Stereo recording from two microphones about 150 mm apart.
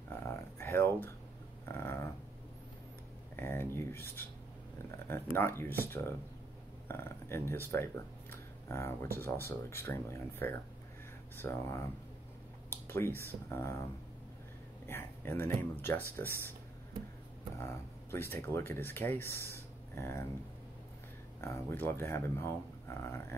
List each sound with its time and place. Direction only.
0.1 s a sound: 20° left (ahead or behind)
3.3 s a sound: 15° left (ahead or behind)
4.9 s speech: 15° left (ahead or behind)
14.9 s speech: 15° left (ahead or behind)
17.6 s speech: 15° left (ahead or behind)
21.4 s speech: 15° left (ahead or behind)